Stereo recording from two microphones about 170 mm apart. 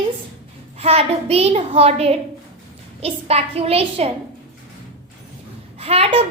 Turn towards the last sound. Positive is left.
turn(degrees=-35)  # may be behind; listen again after turning